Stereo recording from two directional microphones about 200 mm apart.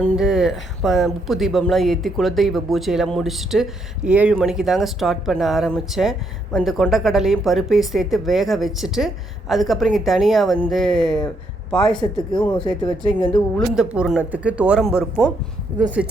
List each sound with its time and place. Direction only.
0.0 s speech: centre (ahead or behind)
11.9 s speech: 20° left (ahead or behind)
13.6 s speech: 5° right (ahead or behind)